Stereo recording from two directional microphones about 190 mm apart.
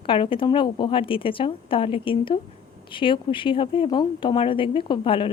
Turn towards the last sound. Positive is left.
turn(degrees=25)  # may be behind; listen again after turning